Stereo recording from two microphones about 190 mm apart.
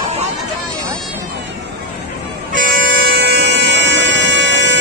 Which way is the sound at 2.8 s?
75° right (ahead or behind).